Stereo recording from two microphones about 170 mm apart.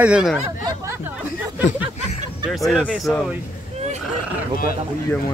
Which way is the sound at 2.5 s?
Centre (ahead or behind).